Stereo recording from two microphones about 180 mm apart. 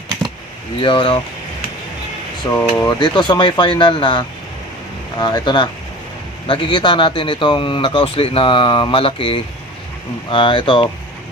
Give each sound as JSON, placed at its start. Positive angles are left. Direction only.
{"t": 0.8, "sound": "a man's voice", "side_deg": 30}
{"t": 2.5, "sound": "a man's voice", "side_deg": 15}